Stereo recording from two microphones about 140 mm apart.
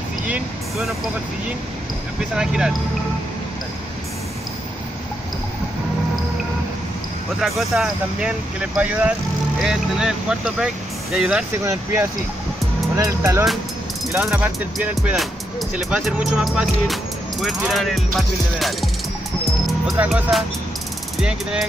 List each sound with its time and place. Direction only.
0.3 s speech: centre (ahead or behind)
2.3 s speech: 5° right (ahead or behind)
7.3 s speech: centre (ahead or behind)
11.6 s speech: 20° right (ahead or behind)
15.0 s speech: centre (ahead or behind)
20.0 s speech: 5° right (ahead or behind)